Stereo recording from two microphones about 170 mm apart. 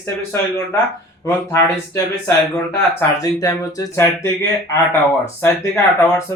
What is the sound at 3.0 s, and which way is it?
A man's voice, 20° left (ahead or behind).